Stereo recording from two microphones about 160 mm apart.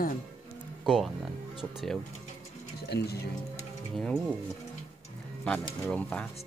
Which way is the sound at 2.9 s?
90° left.